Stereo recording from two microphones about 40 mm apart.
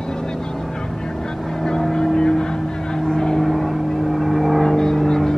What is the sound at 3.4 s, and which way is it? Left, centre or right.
Vehicle, centre.